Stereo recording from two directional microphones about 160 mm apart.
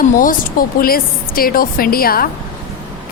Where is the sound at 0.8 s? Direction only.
65° left (ahead or behind).